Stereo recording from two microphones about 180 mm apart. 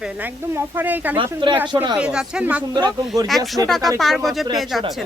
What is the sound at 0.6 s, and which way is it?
Speech, 10° right (ahead or behind).